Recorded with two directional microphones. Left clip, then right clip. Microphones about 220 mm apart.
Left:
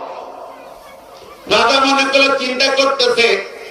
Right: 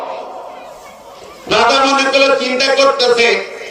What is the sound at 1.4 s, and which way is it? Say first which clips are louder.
Speech: right 1 dB; 20° left (ahead or behind).